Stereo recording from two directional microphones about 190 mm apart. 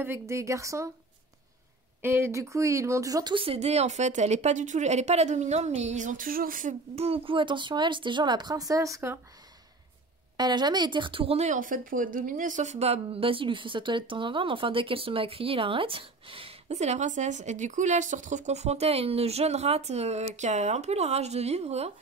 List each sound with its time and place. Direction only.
0.0 s a woman's voice: 15° right (ahead or behind)
2.0 s speech: 10° right (ahead or behind); by 6.7 s 45° right (ahead or behind)
7.0 s speech: 30° right (ahead or behind)
10.3 s speech: 25° right (ahead or behind)